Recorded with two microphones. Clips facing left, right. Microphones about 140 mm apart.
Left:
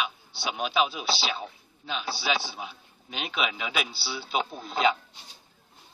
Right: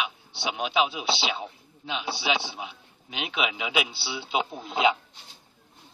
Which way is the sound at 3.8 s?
20° right (ahead or behind).